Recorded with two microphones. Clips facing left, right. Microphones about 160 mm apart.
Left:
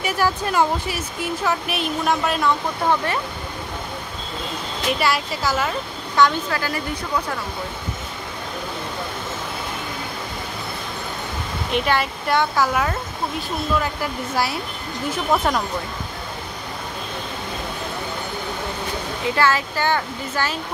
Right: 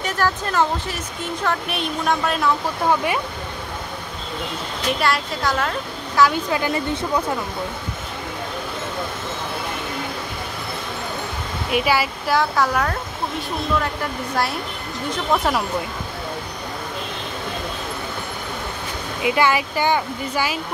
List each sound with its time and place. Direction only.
0.0 s speech: 10° left (ahead or behind)
4.9 s speech: centre (ahead or behind)
6.5 s speech: 20° right (ahead or behind)
11.7 s speech: 5° right (ahead or behind)
19.2 s speech: 15° right (ahead or behind)